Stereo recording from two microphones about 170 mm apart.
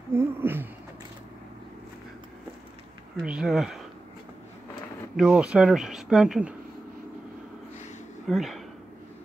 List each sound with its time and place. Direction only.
0.1 s a sound: 15° right (ahead or behind)
3.2 s speech: 5° right (ahead or behind)
5.1 s speech: 5° right (ahead or behind)
8.3 s speech: centre (ahead or behind)